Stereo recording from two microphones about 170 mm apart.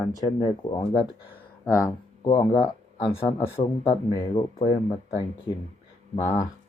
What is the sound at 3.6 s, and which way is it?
Speech, 30° left (ahead or behind).